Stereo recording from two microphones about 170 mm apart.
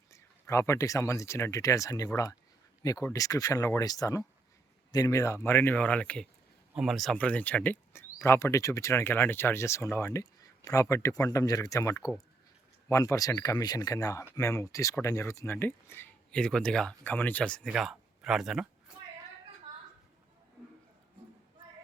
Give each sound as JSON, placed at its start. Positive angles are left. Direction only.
{"t": 0.1, "sound": "speech", "side_deg": 15}